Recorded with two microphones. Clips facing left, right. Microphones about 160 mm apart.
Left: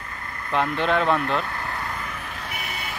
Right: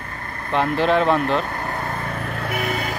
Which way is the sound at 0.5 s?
30° right (ahead or behind).